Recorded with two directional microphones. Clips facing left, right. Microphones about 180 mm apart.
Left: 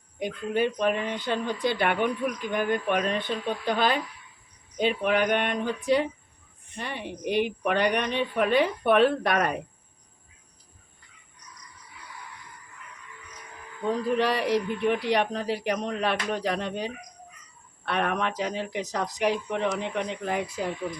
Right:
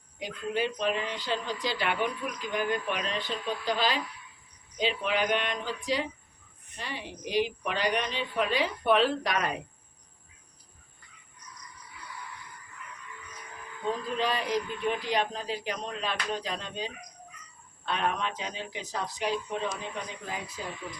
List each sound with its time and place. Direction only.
0.2 s a woman's voice: 55° left (ahead or behind)
13.9 s speech: 70° left (ahead or behind)